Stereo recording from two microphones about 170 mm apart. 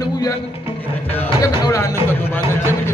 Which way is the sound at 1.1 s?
20° left (ahead or behind).